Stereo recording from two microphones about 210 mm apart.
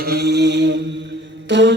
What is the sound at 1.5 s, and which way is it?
Music, 55° right (ahead or behind).